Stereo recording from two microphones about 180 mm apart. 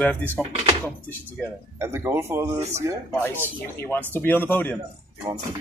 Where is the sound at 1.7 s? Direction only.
15° right (ahead or behind).